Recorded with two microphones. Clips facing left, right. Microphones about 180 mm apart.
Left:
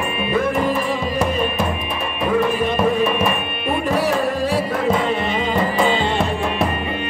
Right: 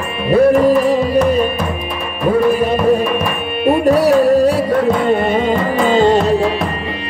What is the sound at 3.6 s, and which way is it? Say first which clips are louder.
Music: right 9 dB; 40° right (ahead or behind).